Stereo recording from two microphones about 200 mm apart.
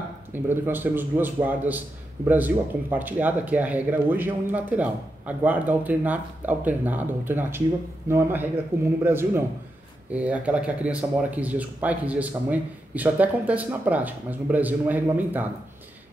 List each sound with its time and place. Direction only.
0.3 s a man's voice: 10° right (ahead or behind)